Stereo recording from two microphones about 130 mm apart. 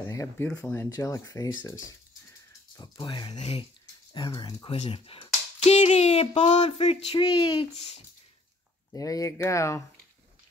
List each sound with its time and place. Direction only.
0.1 s speech: 20° left (ahead or behind)
0.5 s speech: 10° left (ahead or behind)
0.8 s speech: 25° left (ahead or behind)
2.7 s speech: 35° left (ahead or behind)
3.3 s speech: 50° left (ahead or behind)
4.1 s speech: 35° left (ahead or behind)
4.7 s speech: 50° left (ahead or behind)
8.9 s speech: 25° left (ahead or behind)